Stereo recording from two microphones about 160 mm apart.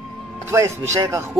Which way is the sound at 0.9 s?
15° right (ahead or behind).